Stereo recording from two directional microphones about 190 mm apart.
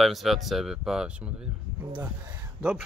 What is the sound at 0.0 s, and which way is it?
A man's voice, centre (ahead or behind).